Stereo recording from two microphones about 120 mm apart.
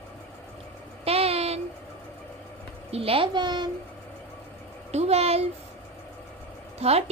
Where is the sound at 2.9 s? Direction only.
55° right (ahead or behind).